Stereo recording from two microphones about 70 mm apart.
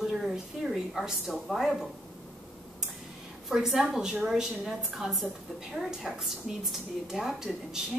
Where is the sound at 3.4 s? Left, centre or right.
Centre.